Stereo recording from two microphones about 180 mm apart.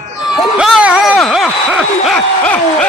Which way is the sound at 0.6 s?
5° right (ahead or behind).